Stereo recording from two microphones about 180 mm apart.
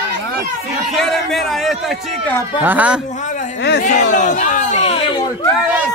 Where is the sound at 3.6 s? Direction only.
65° left (ahead or behind).